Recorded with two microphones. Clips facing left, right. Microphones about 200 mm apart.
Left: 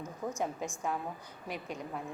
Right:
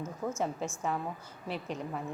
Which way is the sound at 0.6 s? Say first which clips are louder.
Right 2 dB; 15° left (ahead or behind).